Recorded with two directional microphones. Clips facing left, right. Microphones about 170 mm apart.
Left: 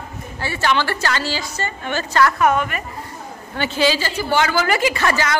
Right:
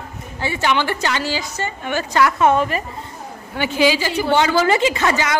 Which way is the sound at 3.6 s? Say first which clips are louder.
Right 2 dB; 15° right (ahead or behind).